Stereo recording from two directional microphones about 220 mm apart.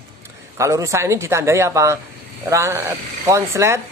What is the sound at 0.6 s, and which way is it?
Speech, 15° right (ahead or behind).